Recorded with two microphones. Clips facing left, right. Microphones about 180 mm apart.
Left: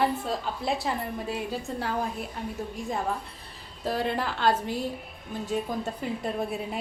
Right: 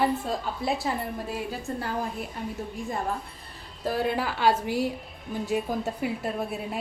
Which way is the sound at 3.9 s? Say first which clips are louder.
Right 1 dB; 5° right (ahead or behind).